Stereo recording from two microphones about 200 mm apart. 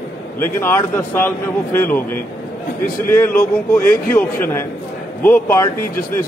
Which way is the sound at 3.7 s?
10° left (ahead or behind).